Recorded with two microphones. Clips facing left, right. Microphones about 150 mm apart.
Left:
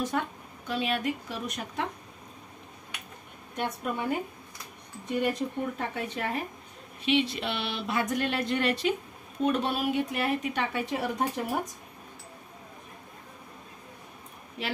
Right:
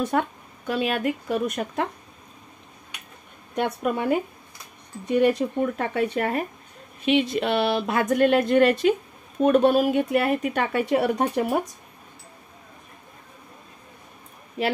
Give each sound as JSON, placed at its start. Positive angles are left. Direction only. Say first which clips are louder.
{"t": 0.1, "sound": "speech", "louder": "right 7 dB", "side_deg": -65}
{"t": 3.5, "sound": "speech", "louder": "right 7 dB", "side_deg": -70}
{"t": 7.1, "sound": "speech", "louder": "right 6 dB", "side_deg": -50}